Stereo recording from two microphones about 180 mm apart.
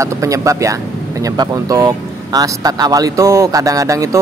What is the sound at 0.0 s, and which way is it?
Speech, 15° right (ahead or behind).